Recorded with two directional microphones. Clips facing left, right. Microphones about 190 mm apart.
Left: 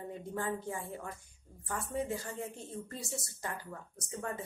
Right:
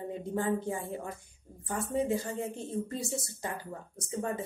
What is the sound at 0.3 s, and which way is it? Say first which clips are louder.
Speech: right 6 dB; 25° right (ahead or behind).